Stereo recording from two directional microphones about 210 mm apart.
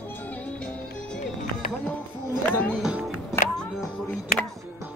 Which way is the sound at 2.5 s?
10° left (ahead or behind).